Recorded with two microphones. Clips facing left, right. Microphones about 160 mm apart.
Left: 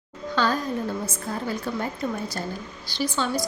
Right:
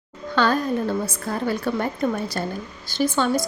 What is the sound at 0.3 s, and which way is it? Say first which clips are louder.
Speech: right 4 dB; 65° right (ahead or behind).